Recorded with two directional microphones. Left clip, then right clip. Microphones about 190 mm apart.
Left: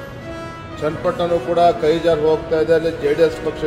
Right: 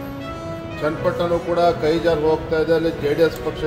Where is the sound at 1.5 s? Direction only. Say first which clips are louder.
Left 4 dB; 5° left (ahead or behind).